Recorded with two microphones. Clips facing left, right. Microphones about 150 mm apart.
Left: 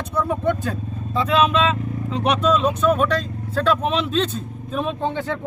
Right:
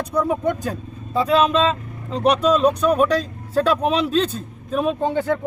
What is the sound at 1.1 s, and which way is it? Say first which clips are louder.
Speech: right 2 dB; 35° right (ahead or behind).